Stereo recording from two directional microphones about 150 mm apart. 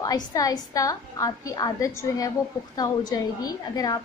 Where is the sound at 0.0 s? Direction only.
25° left (ahead or behind).